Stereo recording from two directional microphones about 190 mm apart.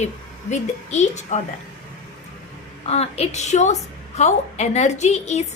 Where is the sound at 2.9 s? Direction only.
30° left (ahead or behind).